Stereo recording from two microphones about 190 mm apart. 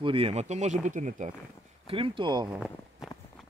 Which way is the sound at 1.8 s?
30° right (ahead or behind).